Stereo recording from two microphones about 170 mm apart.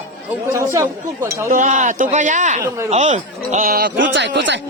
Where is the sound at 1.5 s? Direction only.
50° right (ahead or behind).